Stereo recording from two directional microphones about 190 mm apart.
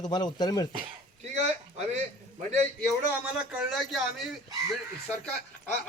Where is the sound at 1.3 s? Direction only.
35° right (ahead or behind).